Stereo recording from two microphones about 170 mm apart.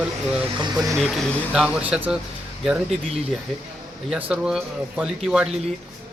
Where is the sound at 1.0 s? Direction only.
Centre (ahead or behind).